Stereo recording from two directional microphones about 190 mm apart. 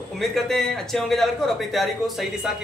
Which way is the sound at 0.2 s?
Centre (ahead or behind).